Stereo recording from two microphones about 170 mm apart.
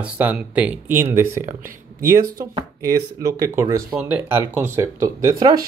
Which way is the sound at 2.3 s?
20° right (ahead or behind).